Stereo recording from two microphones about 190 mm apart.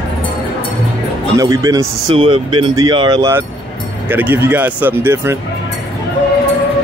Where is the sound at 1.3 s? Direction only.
20° right (ahead or behind).